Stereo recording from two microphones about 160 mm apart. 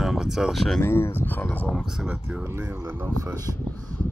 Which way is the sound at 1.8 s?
5° right (ahead or behind).